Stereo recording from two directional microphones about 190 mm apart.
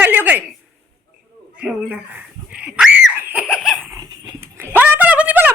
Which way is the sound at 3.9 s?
20° right (ahead or behind).